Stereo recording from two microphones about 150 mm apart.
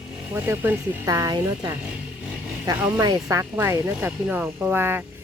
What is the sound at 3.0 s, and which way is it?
Speech, 25° right (ahead or behind).